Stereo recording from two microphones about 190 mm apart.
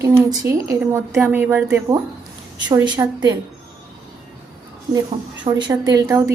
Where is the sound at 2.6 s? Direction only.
25° right (ahead or behind).